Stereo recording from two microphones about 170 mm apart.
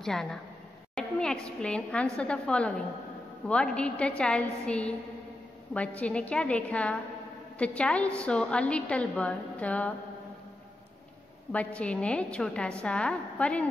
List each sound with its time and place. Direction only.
0.0 s a woman's voice: 5° left (ahead or behind)
11.5 s a woman's voice: 5° left (ahead or behind)